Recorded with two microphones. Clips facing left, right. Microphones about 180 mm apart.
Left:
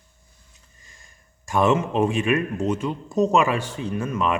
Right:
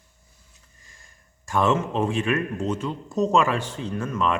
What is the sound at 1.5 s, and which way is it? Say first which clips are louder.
A man's voice: left 2 dB; 15° left (ahead or behind).